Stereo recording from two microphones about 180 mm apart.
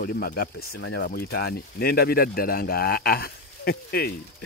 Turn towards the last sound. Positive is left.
turn(degrees=60)  # may be behind; listen again after turning